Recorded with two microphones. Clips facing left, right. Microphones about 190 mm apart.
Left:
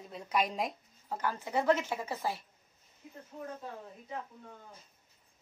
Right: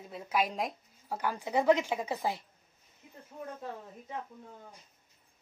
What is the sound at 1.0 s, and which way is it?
A woman's voice, 15° right (ahead or behind).